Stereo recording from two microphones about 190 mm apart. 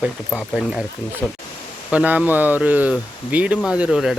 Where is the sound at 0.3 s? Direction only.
Centre (ahead or behind).